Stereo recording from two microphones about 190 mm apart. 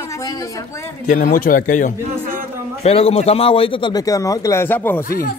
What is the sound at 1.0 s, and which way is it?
A man's voice, 40° left (ahead or behind).